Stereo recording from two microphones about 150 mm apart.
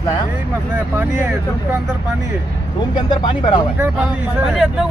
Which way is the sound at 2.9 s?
30° left (ahead or behind).